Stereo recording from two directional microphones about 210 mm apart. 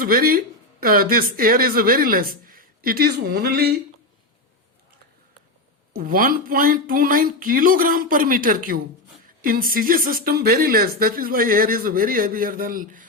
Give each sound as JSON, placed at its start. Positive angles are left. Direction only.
{"t": 0.0, "sound": "speech", "side_deg": -45}
{"t": 5.9, "sound": "speech", "side_deg": -40}